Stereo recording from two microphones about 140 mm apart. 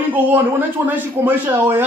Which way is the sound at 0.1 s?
15° right (ahead or behind).